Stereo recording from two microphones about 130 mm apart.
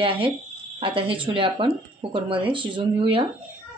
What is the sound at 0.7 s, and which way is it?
Speech, 45° right (ahead or behind).